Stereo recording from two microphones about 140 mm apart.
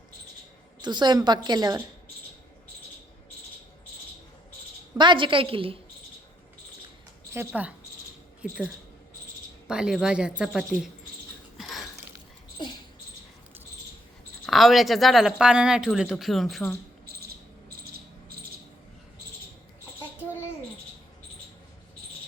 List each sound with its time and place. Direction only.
0.8 s a woman's voice: 30° right (ahead or behind)
4.9 s a woman's voice: 35° right (ahead or behind)
7.3 s a woman's voice: 10° right (ahead or behind)
11.5 s a sound: centre (ahead or behind)
12.6 s dog: 35° left (ahead or behind)
14.4 s speech: centre (ahead or behind)
17.1 s cricket: 90° right